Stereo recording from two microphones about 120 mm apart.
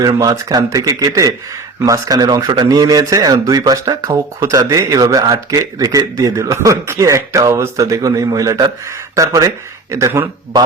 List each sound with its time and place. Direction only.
0.0 s speech: 35° right (ahead or behind)